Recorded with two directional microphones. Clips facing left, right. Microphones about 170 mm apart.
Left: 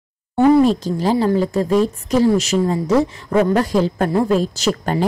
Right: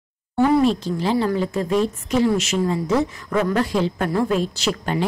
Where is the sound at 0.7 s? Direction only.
40° left (ahead or behind).